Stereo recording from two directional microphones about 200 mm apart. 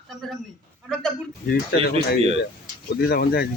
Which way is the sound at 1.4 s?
50° left (ahead or behind).